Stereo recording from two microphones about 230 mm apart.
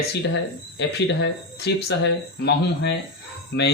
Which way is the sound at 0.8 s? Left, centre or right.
Left.